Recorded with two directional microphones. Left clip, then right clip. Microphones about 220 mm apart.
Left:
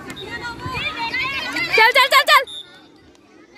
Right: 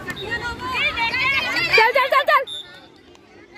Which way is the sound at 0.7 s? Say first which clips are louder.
Right 3 dB; 5° left (ahead or behind).